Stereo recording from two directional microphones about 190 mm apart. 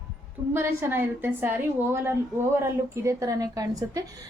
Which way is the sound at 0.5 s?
10° right (ahead or behind).